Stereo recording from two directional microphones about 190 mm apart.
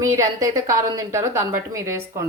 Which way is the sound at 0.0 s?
15° right (ahead or behind).